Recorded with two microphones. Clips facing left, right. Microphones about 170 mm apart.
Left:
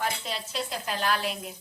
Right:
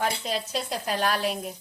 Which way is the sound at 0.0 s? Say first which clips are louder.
Right 4 dB; 45° right (ahead or behind).